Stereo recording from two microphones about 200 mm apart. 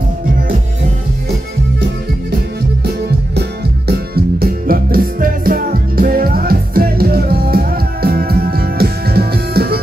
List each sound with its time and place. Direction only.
2.8 s music: 55° right (ahead or behind)